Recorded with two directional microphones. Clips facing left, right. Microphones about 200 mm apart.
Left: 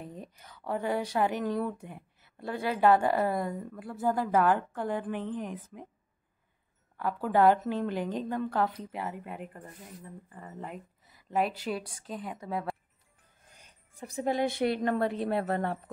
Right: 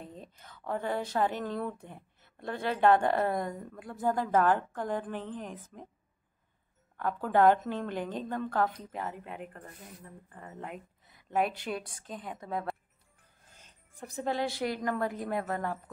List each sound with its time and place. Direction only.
0.0 s a sound: 10° left (ahead or behind)
1.1 s a woman's voice: 15° left (ahead or behind)
7.0 s a woman's voice: 10° left (ahead or behind); by 15.8 s 30° left (ahead or behind)